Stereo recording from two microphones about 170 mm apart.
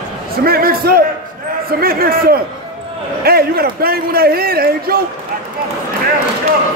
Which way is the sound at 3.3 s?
65° right (ahead or behind).